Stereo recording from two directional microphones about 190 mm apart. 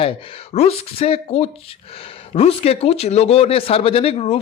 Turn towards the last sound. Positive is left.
turn(degrees=30)  # may be behind; listen again after turning